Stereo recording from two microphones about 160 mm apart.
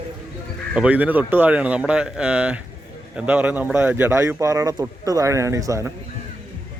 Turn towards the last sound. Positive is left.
turn(degrees=-20)  # may be behind; listen again after turning